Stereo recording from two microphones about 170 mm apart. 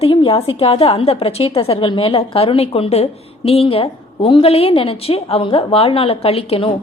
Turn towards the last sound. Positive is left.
turn(degrees=35)  # may be behind; listen again after turning